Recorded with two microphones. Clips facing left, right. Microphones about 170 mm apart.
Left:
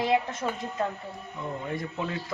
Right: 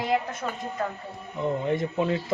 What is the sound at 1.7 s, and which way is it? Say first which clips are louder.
Speech: right 6 dB; 25° right (ahead or behind).